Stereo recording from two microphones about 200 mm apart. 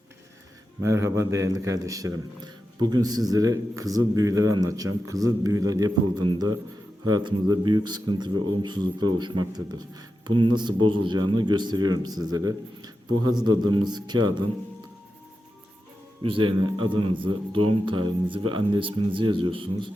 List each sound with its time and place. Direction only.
0.8 s a man's voice: 15° right (ahead or behind)
16.2 s speech: 25° right (ahead or behind)